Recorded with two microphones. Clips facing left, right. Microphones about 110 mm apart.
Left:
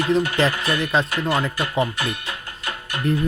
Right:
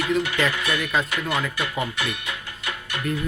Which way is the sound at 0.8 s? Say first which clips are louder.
Left 5 dB; 25° left (ahead or behind).